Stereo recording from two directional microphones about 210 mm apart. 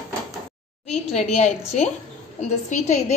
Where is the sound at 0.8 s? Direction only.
30° left (ahead or behind).